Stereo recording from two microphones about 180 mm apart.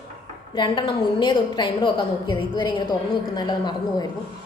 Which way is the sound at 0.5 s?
25° left (ahead or behind).